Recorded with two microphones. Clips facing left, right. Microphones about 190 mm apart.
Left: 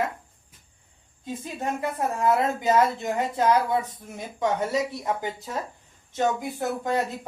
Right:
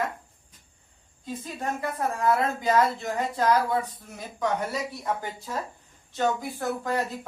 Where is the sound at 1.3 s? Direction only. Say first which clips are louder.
Left 2 dB; 25° left (ahead or behind).